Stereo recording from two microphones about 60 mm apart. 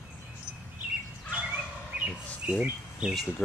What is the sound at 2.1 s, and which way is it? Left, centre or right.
Bird, centre.